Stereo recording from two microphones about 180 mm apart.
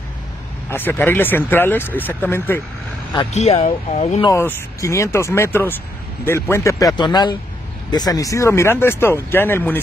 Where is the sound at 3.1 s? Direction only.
35° left (ahead or behind).